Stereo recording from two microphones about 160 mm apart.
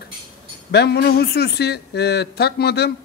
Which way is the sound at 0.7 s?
90° left.